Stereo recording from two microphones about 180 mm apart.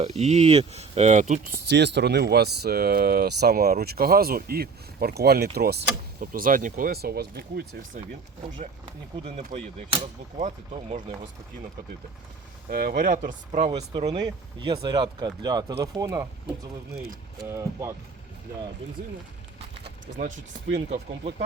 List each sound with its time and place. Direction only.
0.0 s speech: 40° right (ahead or behind)
1.6 s speech: 70° right (ahead or behind)
6.1 s speech: 50° right (ahead or behind)
9.5 s speech: 30° right (ahead or behind)
12.6 s speech: 55° right (ahead or behind)
13.9 s speech: 30° right (ahead or behind)
20.1 s speech: 45° right (ahead or behind)